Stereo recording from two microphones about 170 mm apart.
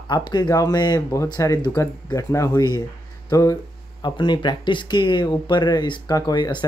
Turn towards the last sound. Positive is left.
turn(degrees=25)  # may be behind; listen again after turning